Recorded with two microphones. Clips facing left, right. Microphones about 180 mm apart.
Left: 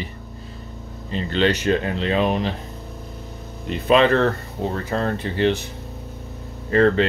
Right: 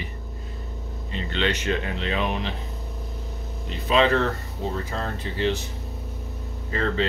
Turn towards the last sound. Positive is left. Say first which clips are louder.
# left 9 dB
turn(degrees=65)  # may be behind; listen again after turning